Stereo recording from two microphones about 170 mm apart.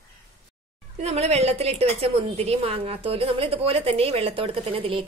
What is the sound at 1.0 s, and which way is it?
A woman's voice, 40° right (ahead or behind).